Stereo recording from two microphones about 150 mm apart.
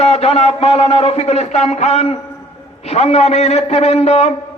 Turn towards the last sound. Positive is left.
turn(degrees=45)  # may be behind; listen again after turning